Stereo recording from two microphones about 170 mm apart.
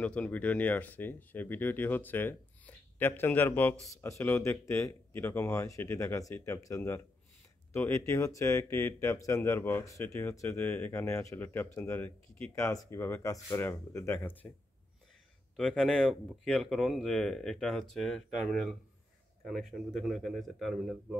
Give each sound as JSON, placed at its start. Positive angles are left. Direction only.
{"t": 0.0, "sound": "speech", "side_deg": 10}
{"t": 15.5, "sound": "speech", "side_deg": 5}